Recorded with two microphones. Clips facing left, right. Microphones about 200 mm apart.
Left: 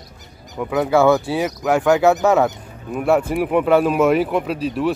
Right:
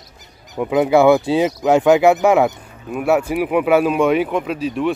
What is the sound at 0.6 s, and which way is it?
Speech, 15° right (ahead or behind).